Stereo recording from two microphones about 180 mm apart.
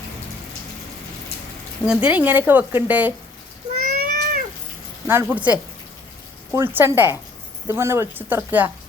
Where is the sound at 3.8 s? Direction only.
50° right (ahead or behind).